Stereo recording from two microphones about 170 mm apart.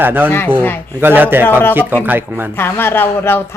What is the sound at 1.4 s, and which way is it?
Speech, 10° left (ahead or behind).